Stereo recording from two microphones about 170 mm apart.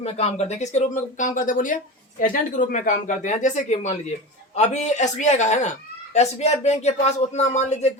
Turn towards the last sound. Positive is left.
turn(degrees=40)  # may be behind; listen again after turning